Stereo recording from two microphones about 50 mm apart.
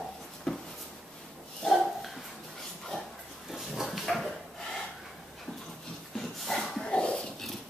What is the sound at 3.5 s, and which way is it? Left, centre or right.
Dog, centre.